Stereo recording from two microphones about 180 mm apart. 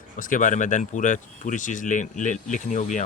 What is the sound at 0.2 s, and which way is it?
Speech, 45° left (ahead or behind).